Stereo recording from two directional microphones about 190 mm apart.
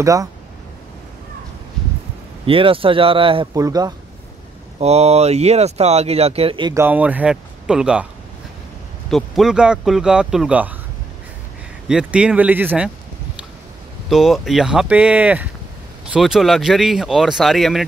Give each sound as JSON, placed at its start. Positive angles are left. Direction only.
{"t": 0.0, "sound": "a man's voice", "side_deg": -15}
{"t": 2.4, "sound": "speech", "side_deg": -30}
{"t": 4.7, "sound": "speech", "side_deg": -35}
{"t": 6.7, "sound": "a man's voice", "side_deg": -10}
{"t": 9.1, "sound": "speech", "side_deg": 0}
{"t": 11.9, "sound": "speech", "side_deg": -5}
{"t": 14.0, "sound": "speech", "side_deg": 0}